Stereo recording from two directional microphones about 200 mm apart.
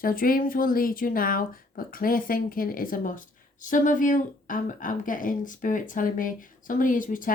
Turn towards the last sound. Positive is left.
turn(degrees=40)  # may be behind; listen again after turning